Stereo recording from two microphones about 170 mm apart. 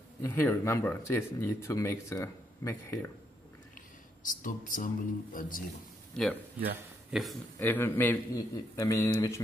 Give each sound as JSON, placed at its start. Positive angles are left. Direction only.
{"t": 0.2, "sound": "speech", "side_deg": 10}
{"t": 3.7, "sound": "speech", "side_deg": 50}
{"t": 6.2, "sound": "a man's voice", "side_deg": 5}
{"t": 7.5, "sound": "speech", "side_deg": 10}